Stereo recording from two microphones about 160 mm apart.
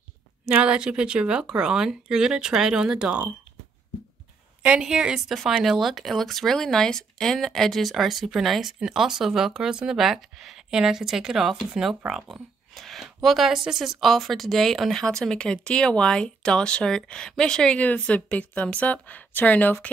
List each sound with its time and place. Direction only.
0.5 s speech: 5° right (ahead or behind)
4.6 s speech: 5° right (ahead or behind); by 19.9 s 10° left (ahead or behind)